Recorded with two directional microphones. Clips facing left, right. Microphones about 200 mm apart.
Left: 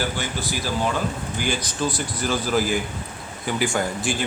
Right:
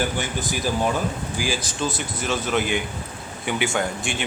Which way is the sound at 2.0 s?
Centre (ahead or behind).